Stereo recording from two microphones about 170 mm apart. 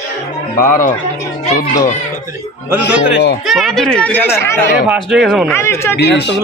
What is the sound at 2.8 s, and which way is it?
Speech, 85° left.